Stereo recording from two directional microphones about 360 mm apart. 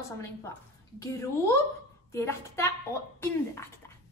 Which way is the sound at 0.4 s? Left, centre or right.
Centre.